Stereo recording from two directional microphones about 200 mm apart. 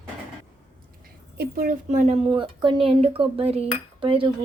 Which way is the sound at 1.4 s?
45° right (ahead or behind).